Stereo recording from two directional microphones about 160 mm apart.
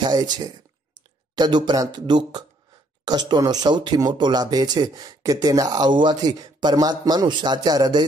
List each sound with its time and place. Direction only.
0.0 s speech: 25° right (ahead or behind)